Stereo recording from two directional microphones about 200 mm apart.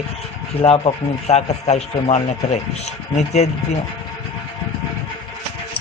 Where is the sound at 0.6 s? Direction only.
30° left (ahead or behind).